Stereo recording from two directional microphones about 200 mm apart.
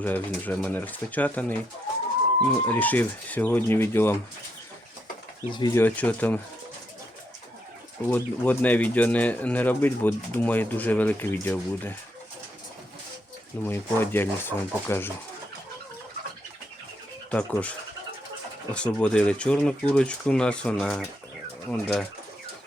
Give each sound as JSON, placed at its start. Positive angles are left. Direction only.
{"t": 0.0, "sound": "speech", "side_deg": 10}
{"t": 5.5, "sound": "speech", "side_deg": 20}
{"t": 5.8, "sound": "speech", "side_deg": 10}
{"t": 8.0, "sound": "speech", "side_deg": 10}
{"t": 13.7, "sound": "speech", "side_deg": 10}
{"t": 17.3, "sound": "speech", "side_deg": 5}